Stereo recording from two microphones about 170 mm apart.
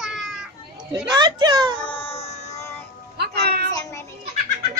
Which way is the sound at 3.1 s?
70° right (ahead or behind).